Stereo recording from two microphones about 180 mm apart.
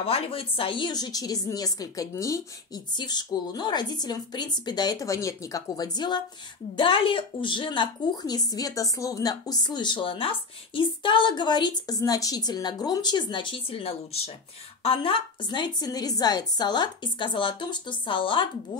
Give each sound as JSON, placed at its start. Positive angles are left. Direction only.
{"t": 0.0, "sound": "speech", "side_deg": 30}